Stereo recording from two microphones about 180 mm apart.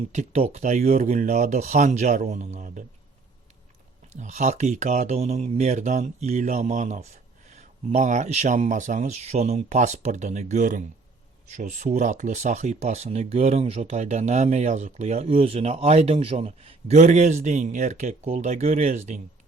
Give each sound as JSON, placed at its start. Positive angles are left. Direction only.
{"t": 0.1, "sound": "speech", "side_deg": -40}
{"t": 4.2, "sound": "speech", "side_deg": -40}